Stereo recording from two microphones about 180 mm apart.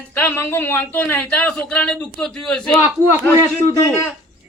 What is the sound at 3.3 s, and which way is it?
Speech, 15° left (ahead or behind).